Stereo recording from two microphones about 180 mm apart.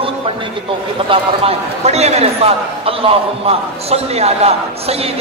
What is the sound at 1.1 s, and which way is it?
A man's voice, 35° right (ahead or behind).